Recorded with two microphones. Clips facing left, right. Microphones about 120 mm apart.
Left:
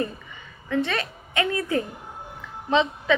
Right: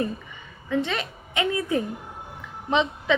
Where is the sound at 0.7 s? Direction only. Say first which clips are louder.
Left 1 dB; 15° right (ahead or behind).